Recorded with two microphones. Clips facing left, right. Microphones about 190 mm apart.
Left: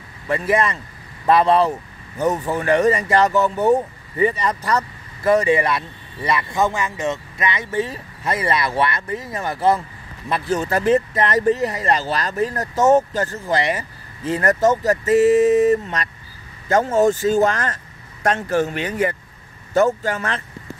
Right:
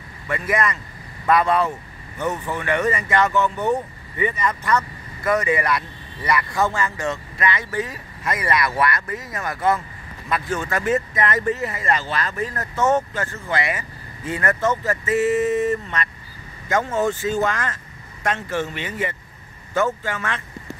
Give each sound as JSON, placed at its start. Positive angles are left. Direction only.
{"t": 0.3, "sound": "speech", "side_deg": 30}